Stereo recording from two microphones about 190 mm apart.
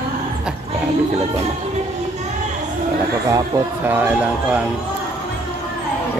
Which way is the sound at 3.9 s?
5° right (ahead or behind).